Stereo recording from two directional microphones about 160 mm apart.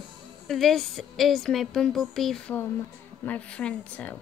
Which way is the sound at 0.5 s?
Centre (ahead or behind).